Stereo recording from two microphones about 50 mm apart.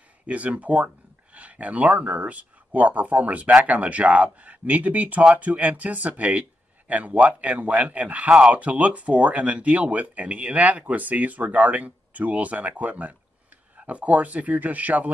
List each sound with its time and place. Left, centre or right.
0.3 s speech: right